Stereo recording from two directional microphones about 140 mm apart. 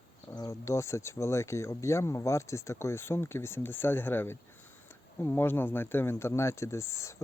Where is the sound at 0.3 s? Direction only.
25° left (ahead or behind).